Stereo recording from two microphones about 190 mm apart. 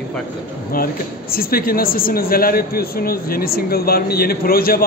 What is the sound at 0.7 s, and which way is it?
Speech, 50° left (ahead or behind).